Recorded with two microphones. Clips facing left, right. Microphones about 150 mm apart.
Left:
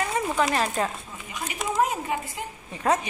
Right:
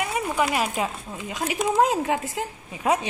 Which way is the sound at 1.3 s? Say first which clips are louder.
Right 6 dB; 90° right.